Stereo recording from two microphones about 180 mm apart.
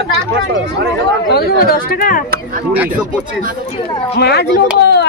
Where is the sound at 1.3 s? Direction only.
55° left (ahead or behind).